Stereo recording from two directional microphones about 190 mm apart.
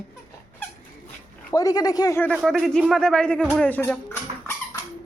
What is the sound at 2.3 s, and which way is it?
Speech, centre (ahead or behind).